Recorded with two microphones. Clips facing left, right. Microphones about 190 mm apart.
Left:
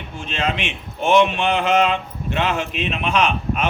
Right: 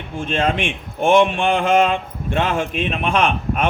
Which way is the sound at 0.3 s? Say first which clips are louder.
Right 4 dB; 50° right (ahead or behind).